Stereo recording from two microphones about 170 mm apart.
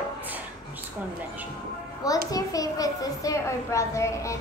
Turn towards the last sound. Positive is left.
turn(degrees=15)  # may be behind; listen again after turning